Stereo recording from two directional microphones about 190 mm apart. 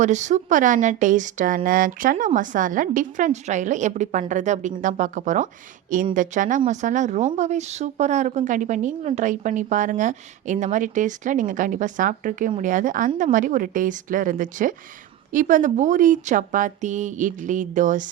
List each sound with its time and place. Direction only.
0.0 s a woman's voice: 40° right (ahead or behind)